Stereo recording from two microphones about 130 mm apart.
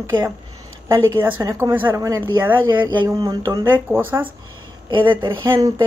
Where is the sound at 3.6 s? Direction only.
15° right (ahead or behind).